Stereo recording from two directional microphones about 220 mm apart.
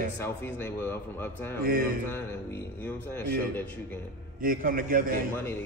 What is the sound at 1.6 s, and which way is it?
Speech, 40° right (ahead or behind).